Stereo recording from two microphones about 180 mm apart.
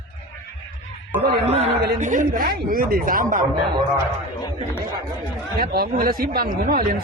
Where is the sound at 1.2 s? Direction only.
60° right (ahead or behind).